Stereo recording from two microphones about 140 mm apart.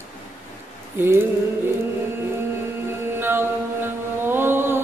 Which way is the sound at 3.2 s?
15° right (ahead or behind).